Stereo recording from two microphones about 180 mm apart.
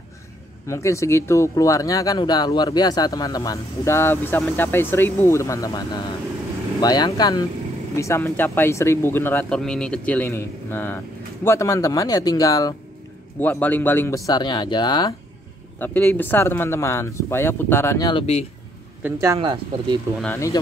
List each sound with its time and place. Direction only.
0.7 s speech: 15° left (ahead or behind)
13.4 s speech: 10° left (ahead or behind)
15.8 s speech: 10° left (ahead or behind)
19.0 s speech: 15° right (ahead or behind)